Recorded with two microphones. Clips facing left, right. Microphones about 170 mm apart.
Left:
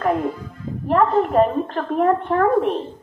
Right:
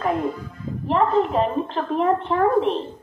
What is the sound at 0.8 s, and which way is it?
A woman's voice, 50° left (ahead or behind).